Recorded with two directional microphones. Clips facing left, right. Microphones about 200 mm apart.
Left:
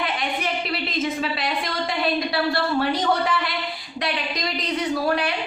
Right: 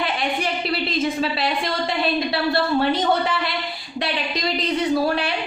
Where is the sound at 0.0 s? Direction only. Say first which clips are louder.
Right 2 dB; 30° right (ahead or behind).